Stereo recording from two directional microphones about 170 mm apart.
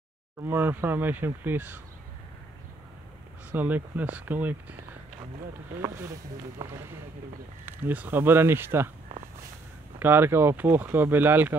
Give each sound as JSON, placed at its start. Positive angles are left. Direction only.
{"t": 0.4, "sound": "speech", "side_deg": -10}
{"t": 3.5, "sound": "speech", "side_deg": -10}
{"t": 5.8, "sound": "speech", "side_deg": -15}
{"t": 7.6, "sound": "speech", "side_deg": -10}
{"t": 9.9, "sound": "speech", "side_deg": -10}